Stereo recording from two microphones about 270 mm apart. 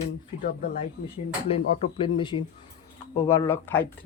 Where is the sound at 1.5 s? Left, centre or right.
Left.